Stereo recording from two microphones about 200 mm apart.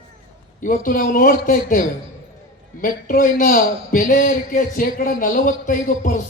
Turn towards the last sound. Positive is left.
turn(degrees=45)  # may be behind; listen again after turning